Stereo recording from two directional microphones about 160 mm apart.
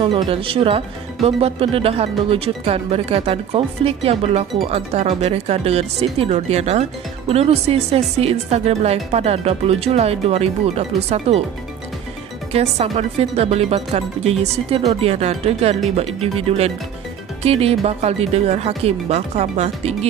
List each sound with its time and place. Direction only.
0.0 s speech: 35° right (ahead or behind)
12.5 s speech: 40° right (ahead or behind)